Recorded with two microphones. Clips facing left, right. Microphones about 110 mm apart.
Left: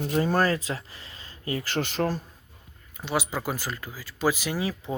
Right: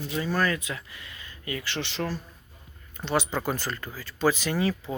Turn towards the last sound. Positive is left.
turn(degrees=10)  # may be behind; listen again after turning